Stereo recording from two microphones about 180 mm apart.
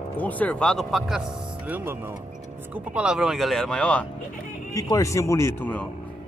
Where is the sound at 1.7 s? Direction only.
10° right (ahead or behind); by 4.1 s 5° left (ahead or behind).